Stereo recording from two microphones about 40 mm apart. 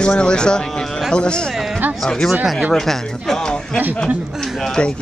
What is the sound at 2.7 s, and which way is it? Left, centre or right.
Speech, centre.